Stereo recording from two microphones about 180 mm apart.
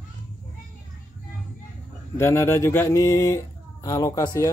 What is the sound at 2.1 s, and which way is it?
Speech, 15° left (ahead or behind).